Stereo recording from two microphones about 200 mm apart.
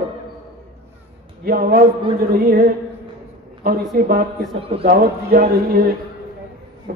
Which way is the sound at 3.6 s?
50° right (ahead or behind).